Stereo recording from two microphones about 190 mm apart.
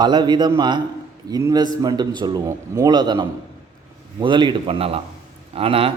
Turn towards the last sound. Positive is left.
turn(degrees=-30)  # may be behind; listen again after turning